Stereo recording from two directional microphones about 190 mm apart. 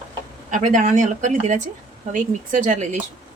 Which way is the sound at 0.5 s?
40° right (ahead or behind).